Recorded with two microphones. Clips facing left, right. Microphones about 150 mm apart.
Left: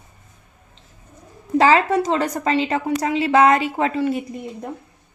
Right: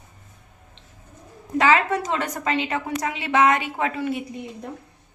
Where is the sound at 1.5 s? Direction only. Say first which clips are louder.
Left 4 dB; 35° left (ahead or behind).